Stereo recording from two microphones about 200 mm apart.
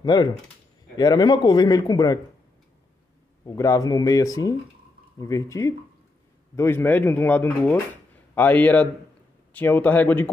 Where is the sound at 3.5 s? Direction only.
15° left (ahead or behind).